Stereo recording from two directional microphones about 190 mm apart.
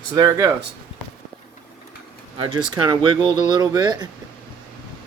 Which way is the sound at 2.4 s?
25° right (ahead or behind).